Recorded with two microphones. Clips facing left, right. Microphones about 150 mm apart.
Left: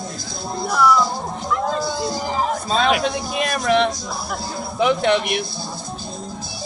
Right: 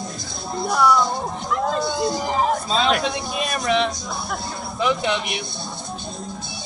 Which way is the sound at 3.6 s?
50° left (ahead or behind).